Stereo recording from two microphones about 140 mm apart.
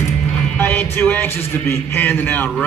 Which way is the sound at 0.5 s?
15° left (ahead or behind).